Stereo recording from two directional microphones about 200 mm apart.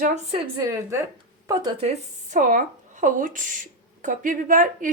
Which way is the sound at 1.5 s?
25° right (ahead or behind).